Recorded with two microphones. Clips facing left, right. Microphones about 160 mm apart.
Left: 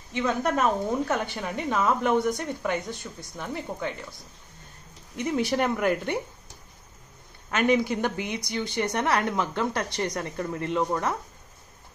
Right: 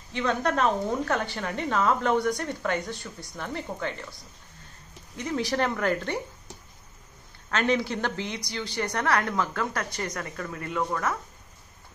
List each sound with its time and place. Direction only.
0.1 s a woman's voice: 10° left (ahead or behind)
5.1 s a woman's voice: 20° left (ahead or behind)
7.5 s a woman's voice: 15° left (ahead or behind)